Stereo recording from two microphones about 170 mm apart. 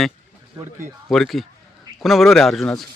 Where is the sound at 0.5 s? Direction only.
15° right (ahead or behind).